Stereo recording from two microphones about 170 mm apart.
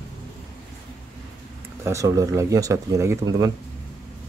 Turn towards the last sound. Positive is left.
turn(degrees=-20)  # may be behind; listen again after turning